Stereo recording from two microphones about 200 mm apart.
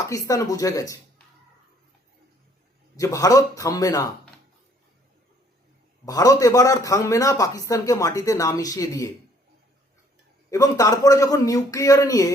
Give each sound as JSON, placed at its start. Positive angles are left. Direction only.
{"t": 0.0, "sound": "a man's voice", "side_deg": 15}
{"t": 2.9, "sound": "a man's voice", "side_deg": 15}
{"t": 6.1, "sound": "a man's voice", "side_deg": 20}
{"t": 10.5, "sound": "a man's voice", "side_deg": 15}